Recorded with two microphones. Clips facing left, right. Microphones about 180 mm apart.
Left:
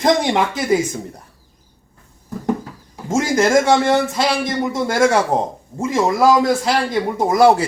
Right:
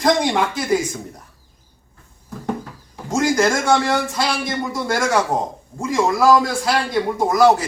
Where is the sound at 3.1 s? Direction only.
25° left (ahead or behind).